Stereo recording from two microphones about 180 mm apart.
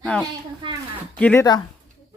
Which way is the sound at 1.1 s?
10° left (ahead or behind).